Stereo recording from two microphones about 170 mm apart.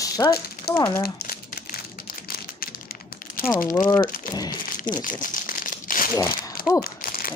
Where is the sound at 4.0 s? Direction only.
25° left (ahead or behind).